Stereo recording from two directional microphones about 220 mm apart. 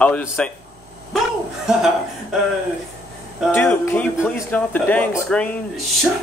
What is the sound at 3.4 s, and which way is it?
Speech, 10° left (ahead or behind).